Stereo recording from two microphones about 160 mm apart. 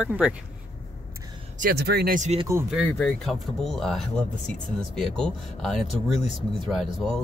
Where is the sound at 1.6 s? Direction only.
85° right.